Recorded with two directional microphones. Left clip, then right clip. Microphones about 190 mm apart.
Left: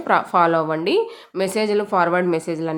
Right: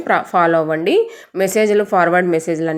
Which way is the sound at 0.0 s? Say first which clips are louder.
Right 2 dB; 5° right (ahead or behind).